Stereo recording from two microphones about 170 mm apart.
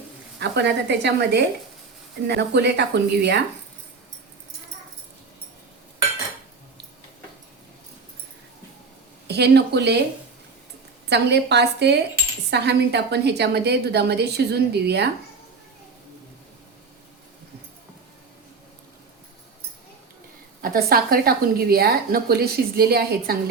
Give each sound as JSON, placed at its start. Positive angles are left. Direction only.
{"t": 0.3, "sound": "speech", "side_deg": -90}
{"t": 9.2, "sound": "speech", "side_deg": -75}
{"t": 11.1, "sound": "a woman's voice", "side_deg": -80}
{"t": 20.6, "sound": "a woman's voice", "side_deg": -60}